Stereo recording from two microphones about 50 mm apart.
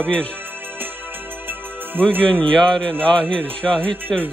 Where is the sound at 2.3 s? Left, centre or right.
Left.